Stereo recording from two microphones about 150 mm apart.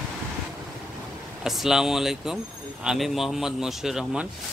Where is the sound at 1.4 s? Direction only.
Centre (ahead or behind).